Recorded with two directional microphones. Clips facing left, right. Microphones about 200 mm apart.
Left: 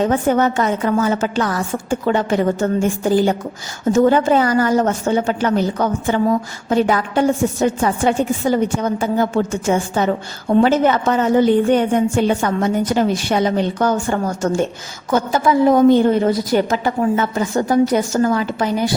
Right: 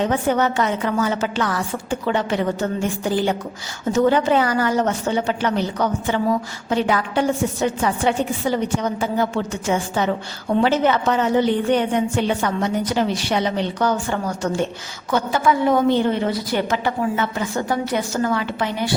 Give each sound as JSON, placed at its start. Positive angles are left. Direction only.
{"t": 0.0, "sound": "a woman's voice", "side_deg": 45}